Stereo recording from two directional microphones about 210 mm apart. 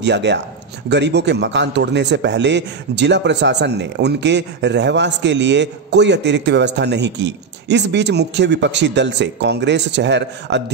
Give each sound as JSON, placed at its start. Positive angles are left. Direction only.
{"t": 0.0, "sound": "a man's voice", "side_deg": -55}